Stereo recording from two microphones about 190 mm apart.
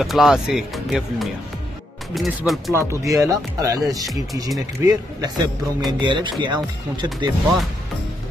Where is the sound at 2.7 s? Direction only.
15° right (ahead or behind).